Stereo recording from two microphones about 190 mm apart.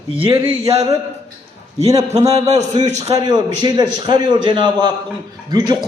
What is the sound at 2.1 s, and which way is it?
Speech, 35° right (ahead or behind).